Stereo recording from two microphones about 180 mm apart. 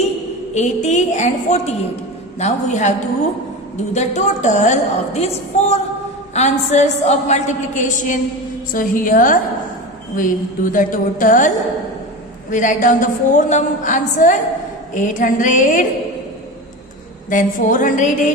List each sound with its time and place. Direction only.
0.5 s a woman's voice: 40° left (ahead or behind)
3.9 s a woman's voice: 40° left (ahead or behind)
17.2 s a woman's voice: 45° left (ahead or behind)